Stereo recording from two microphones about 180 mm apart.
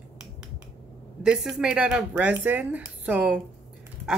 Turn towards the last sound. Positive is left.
turn(degrees=-5)  # may be behind; listen again after turning